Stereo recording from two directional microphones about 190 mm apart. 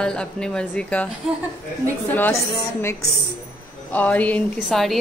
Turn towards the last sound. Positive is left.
turn(degrees=0)  # may be behind; listen again after turning